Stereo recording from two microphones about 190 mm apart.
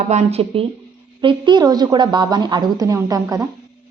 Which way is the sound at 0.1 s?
35° right (ahead or behind).